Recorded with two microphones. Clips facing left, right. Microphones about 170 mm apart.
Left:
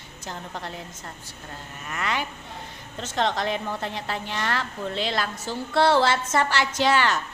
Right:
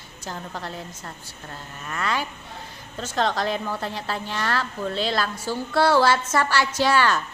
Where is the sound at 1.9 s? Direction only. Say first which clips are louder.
Right 2 dB; 20° left (ahead or behind).